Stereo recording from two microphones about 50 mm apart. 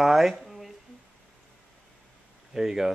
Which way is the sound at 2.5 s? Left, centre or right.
Centre.